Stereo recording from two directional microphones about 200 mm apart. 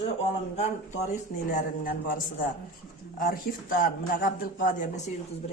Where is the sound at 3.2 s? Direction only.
45° left (ahead or behind).